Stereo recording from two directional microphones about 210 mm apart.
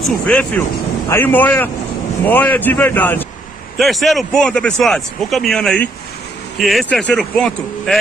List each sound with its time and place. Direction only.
0.0 s speech: 5° left (ahead or behind)